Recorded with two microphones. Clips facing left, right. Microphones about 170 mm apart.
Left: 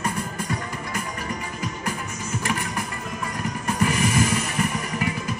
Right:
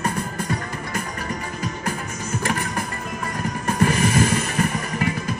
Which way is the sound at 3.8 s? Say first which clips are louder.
Right 3 dB; 35° right (ahead or behind).